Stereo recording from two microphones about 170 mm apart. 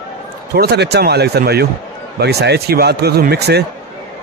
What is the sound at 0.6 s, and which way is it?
Speech, 75° right (ahead or behind).